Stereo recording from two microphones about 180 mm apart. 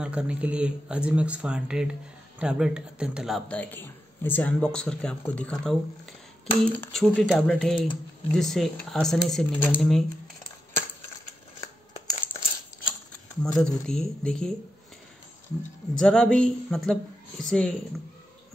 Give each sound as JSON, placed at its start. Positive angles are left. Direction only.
{"t": 0.0, "sound": "a man's voice", "side_deg": -5}
{"t": 11.9, "sound": "a sound", "side_deg": 25}
{"t": 13.6, "sound": "a man's voice", "side_deg": 5}
{"t": 16.0, "sound": "a man's voice", "side_deg": 5}